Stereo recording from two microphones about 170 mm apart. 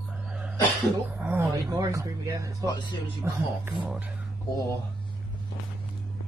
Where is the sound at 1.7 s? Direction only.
20° right (ahead or behind).